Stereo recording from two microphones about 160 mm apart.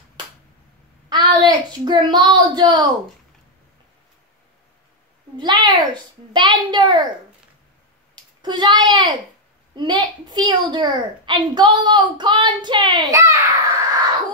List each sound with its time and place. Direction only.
1.0 s a child's voice: 30° right (ahead or behind)
5.4 s a woman's voice: 30° right (ahead or behind)
8.4 s a woman's voice: 30° right (ahead or behind)